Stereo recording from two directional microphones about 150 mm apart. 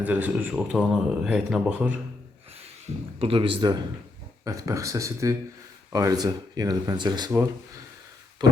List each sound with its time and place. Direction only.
0.0 s speech: 10° right (ahead or behind)
3.2 s a man's voice: 35° right (ahead or behind)
8.4 s a sound: 30° right (ahead or behind)